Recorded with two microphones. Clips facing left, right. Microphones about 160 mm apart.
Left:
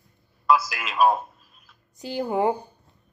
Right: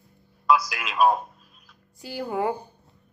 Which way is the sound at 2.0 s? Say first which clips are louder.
Left 3 dB; 20° left (ahead or behind).